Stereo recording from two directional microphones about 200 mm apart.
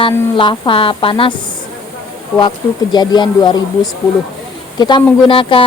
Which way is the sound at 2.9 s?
20° left (ahead or behind).